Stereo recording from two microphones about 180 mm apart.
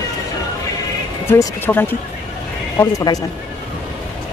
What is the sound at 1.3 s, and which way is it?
Speech, 15° left (ahead or behind).